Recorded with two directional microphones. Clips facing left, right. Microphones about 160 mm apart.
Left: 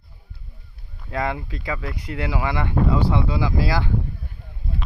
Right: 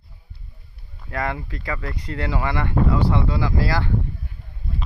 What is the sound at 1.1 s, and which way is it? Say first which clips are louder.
Speech: left 1 dB; 15° left (ahead or behind).